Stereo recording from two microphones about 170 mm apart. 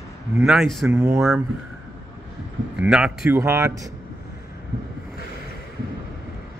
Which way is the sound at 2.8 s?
5° right (ahead or behind).